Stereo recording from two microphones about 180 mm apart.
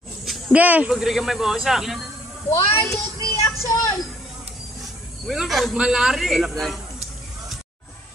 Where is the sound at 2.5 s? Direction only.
15° left (ahead or behind).